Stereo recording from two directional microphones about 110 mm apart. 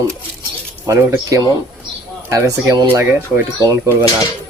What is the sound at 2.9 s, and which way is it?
Speech, 20° right (ahead or behind).